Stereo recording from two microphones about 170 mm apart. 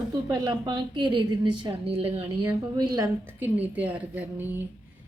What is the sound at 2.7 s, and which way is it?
A woman's voice, 20° right (ahead or behind).